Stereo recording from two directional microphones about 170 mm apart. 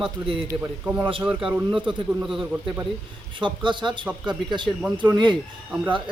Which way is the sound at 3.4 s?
30° right (ahead or behind).